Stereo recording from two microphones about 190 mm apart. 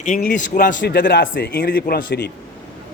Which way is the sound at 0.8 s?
65° left (ahead or behind).